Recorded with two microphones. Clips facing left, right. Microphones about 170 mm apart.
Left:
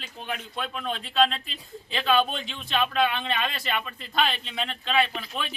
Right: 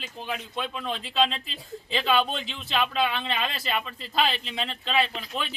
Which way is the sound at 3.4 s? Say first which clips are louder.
Even; 30° right (ahead or behind).